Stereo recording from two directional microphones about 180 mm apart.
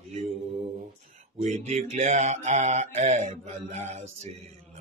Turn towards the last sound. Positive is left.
turn(degrees=-40)  # may be behind; listen again after turning